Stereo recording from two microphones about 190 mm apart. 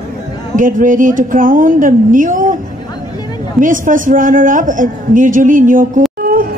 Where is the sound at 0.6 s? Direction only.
45° right (ahead or behind).